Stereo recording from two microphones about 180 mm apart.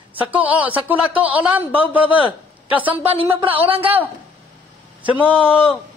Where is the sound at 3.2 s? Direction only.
30° right (ahead or behind).